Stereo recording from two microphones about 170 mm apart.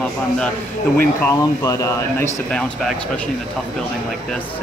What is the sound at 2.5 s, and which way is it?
Speech, 5° left (ahead or behind).